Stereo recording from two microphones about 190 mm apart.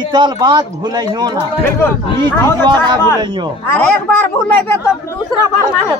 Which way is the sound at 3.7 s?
10° left (ahead or behind).